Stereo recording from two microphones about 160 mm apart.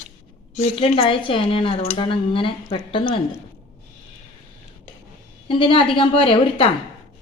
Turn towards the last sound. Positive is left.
turn(degrees=35)  # may be behind; listen again after turning